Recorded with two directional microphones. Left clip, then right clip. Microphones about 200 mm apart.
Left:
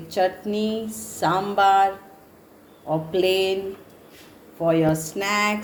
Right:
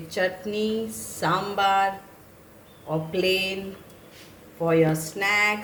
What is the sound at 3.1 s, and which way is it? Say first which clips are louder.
Speech: left 3 dB; 25° left (ahead or behind).